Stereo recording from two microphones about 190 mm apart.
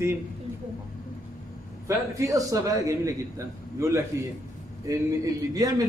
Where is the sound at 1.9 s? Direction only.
15° right (ahead or behind).